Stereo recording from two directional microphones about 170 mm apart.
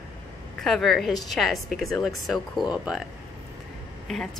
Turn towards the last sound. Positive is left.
turn(degrees=0)  # may be behind; listen again after turning